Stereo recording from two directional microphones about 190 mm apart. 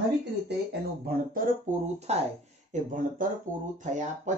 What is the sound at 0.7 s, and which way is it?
Speech, 55° right (ahead or behind).